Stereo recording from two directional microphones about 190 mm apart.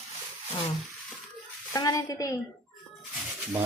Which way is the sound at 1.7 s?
20° left (ahead or behind).